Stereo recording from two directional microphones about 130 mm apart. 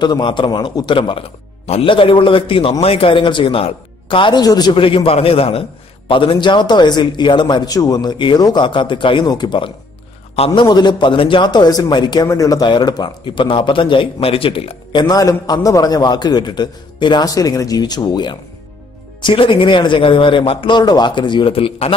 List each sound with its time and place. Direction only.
0.0 s a man's voice: 35° left (ahead or behind)